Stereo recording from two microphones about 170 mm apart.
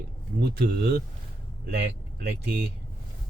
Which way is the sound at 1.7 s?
80° right.